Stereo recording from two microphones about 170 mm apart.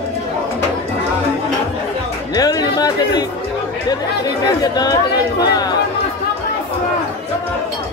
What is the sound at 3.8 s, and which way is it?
Speech, 25° left (ahead or behind).